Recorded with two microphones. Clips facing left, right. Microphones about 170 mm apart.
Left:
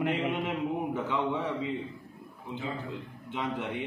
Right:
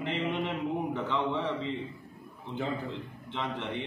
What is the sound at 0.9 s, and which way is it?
Speech, 10° left (ahead or behind).